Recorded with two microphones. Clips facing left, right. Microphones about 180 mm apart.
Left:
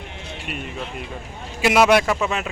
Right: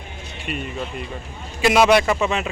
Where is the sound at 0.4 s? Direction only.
Centre (ahead or behind).